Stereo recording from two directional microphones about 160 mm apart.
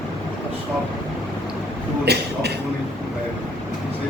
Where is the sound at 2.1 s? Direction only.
90° right.